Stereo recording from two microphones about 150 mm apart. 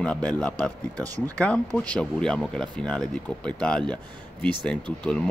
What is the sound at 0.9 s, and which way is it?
Speech, 25° right (ahead or behind).